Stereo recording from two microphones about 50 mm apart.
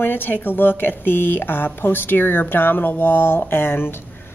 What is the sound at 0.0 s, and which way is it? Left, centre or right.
Speech, left.